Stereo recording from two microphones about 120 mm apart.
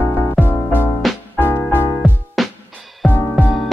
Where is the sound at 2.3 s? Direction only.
Centre (ahead or behind).